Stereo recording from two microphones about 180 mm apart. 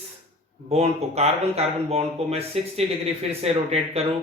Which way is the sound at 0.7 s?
35° right (ahead or behind).